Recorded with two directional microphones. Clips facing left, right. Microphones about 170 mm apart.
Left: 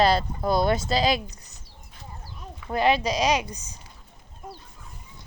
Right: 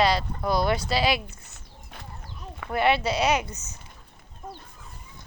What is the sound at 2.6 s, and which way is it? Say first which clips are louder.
Speech: left 1 dB; 65° right (ahead or behind).